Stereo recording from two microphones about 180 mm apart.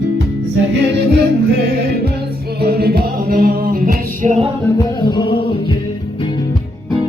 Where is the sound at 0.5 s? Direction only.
75° right (ahead or behind).